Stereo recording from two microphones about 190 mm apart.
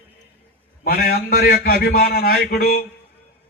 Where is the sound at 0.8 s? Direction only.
50° left (ahead or behind).